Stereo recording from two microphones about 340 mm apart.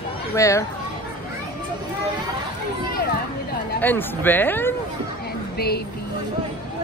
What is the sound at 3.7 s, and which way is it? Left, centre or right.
Speech, centre.